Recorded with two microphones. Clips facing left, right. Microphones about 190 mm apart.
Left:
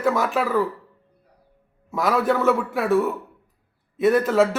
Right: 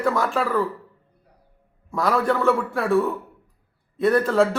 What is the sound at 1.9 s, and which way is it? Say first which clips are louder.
A man's voice: left 1 dB; 5° left (ahead or behind).